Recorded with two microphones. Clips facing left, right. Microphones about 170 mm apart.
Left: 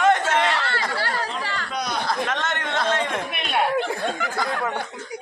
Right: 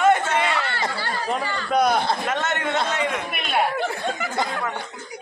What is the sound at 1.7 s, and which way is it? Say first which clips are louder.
Speech: right 12 dB; 55° right (ahead or behind).